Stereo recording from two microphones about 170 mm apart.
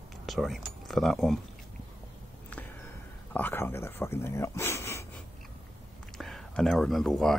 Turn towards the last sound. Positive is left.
turn(degrees=0)  # may be behind; listen again after turning